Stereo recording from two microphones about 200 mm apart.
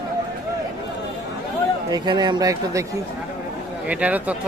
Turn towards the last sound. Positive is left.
turn(degrees=-5)  # may be behind; listen again after turning